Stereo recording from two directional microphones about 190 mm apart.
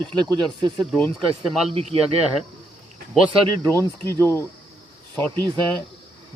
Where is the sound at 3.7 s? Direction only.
10° left (ahead or behind).